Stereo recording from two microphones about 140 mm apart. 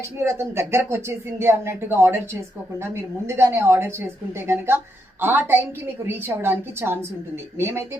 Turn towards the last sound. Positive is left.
turn(degrees=-15)  # may be behind; listen again after turning